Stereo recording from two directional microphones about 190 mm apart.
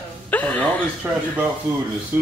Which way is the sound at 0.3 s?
10° left (ahead or behind).